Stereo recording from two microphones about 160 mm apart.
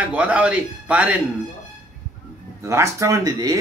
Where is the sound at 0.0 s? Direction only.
10° right (ahead or behind).